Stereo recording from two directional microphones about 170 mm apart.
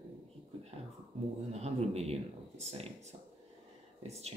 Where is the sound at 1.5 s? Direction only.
40° right (ahead or behind).